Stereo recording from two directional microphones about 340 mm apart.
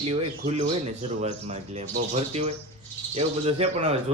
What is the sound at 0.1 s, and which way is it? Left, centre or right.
Speech, centre.